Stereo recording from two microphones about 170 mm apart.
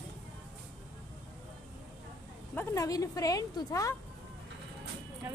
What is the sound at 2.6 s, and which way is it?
A woman's voice, 15° left (ahead or behind).